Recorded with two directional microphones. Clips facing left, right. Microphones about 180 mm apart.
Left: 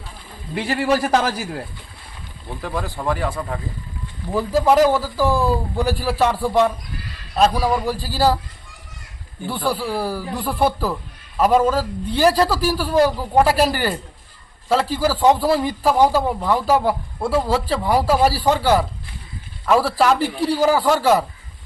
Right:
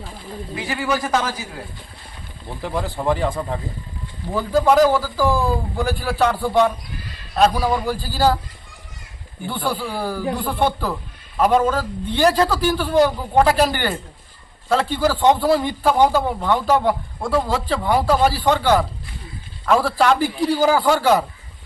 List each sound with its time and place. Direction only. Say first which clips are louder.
0.7 s a man's voice: left 3 dB; 35° left (ahead or behind)
2.6 s speech: right 2 dB; 15° right (ahead or behind)
4.4 s a man's voice: even; 5° left (ahead or behind)
9.5 s a man's voice: left 2 dB; 5° left (ahead or behind)